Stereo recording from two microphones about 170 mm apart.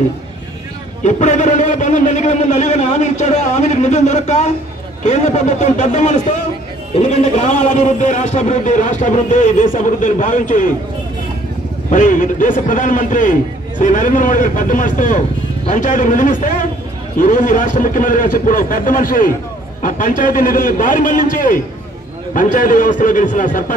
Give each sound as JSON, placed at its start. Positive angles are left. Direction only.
{"t": 1.0, "sound": "a man's voice", "side_deg": 45}
{"t": 11.9, "sound": "a man's voice", "side_deg": 50}